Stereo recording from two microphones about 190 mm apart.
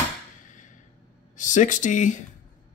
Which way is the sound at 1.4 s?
40° left (ahead or behind).